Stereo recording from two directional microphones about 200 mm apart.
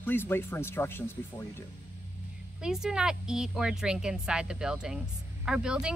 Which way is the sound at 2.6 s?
5° right (ahead or behind).